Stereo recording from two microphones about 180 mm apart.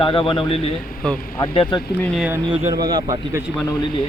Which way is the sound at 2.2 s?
15° right (ahead or behind).